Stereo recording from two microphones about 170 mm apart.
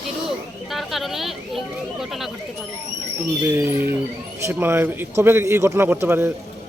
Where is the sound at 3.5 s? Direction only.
15° right (ahead or behind).